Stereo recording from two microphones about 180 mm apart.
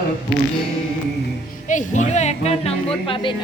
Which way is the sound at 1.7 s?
40° left (ahead or behind).